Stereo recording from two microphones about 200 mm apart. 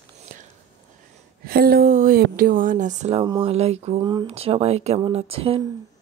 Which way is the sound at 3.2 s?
25° right (ahead or behind).